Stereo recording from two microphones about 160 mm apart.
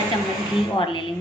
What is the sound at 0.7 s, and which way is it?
Speech, 35° left (ahead or behind).